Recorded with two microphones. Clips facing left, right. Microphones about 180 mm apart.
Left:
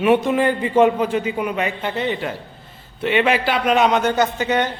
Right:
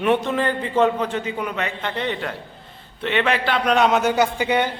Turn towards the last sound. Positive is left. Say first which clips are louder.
# left 1 dB
turn(degrees=-10)  # may be behind; listen again after turning